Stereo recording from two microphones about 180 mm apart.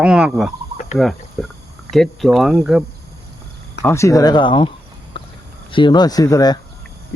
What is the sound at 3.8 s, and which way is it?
Speech, 15° left (ahead or behind).